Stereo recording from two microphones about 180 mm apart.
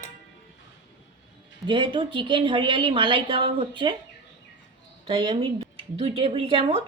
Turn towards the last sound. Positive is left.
turn(degrees=-30)  # may be behind; listen again after turning